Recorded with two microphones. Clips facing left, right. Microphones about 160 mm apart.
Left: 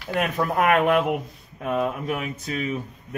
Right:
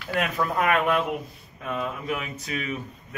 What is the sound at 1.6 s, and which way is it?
Speech, 45° left (ahead or behind).